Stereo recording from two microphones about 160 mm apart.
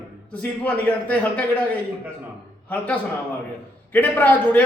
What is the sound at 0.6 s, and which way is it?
Speech, 10° left (ahead or behind).